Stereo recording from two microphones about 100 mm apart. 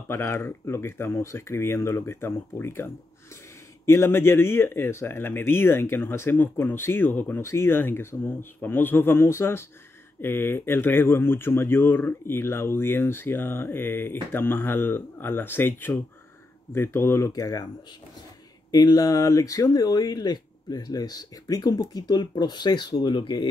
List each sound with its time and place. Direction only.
0.1 s speech: 25° left (ahead or behind)
17.3 s speech: 40° left (ahead or behind)
18.7 s speech: 40° left (ahead or behind)